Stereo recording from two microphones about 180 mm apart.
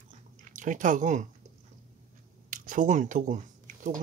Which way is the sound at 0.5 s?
45° right (ahead or behind).